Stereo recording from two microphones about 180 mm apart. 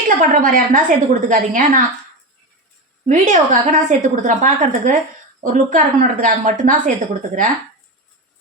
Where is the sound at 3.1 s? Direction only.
45° right (ahead or behind).